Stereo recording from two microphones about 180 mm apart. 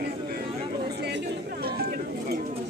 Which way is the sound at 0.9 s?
65° right (ahead or behind).